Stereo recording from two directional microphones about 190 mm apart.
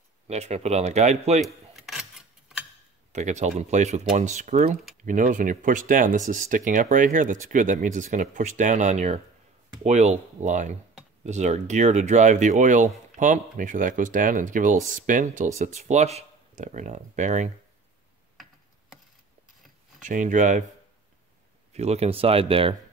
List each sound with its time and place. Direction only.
0.3 s speech: 35° right (ahead or behind)
1.4 s cutlery: centre (ahead or behind)
3.1 s speech: 40° right (ahead or behind)
20.0 s speech: 40° right (ahead or behind)
21.7 s speech: 35° right (ahead or behind)